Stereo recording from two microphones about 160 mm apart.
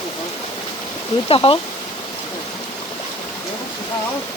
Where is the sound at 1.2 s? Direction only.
35° left (ahead or behind).